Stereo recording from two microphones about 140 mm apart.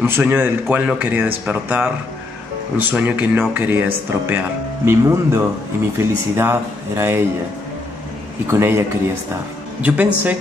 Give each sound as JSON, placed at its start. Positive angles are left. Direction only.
{"t": 0.0, "sound": "speech", "side_deg": -15}
{"t": 2.9, "sound": "speech", "side_deg": -10}
{"t": 8.5, "sound": "speech", "side_deg": -20}